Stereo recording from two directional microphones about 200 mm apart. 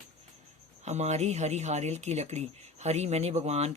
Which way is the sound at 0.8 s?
35° right (ahead or behind).